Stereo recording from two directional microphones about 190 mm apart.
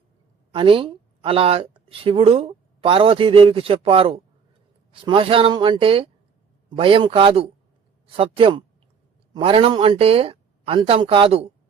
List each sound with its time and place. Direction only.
0.5 s speech: 25° right (ahead or behind)